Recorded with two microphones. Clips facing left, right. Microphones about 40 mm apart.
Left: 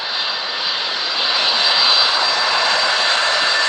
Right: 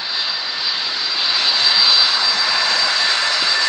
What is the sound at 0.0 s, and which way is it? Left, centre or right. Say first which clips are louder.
Vehicle: left 1 dB; left.